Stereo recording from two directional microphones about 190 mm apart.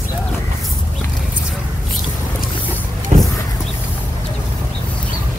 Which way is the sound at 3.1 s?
35° right (ahead or behind).